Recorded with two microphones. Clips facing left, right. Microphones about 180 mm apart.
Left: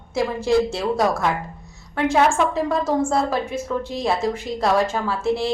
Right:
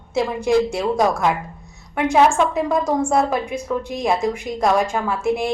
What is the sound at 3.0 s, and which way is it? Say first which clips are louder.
A woman's voice: right 2 dB; 15° right (ahead or behind).